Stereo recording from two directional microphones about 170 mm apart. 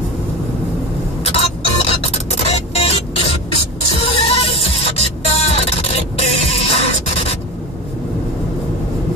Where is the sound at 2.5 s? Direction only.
35° left (ahead or behind).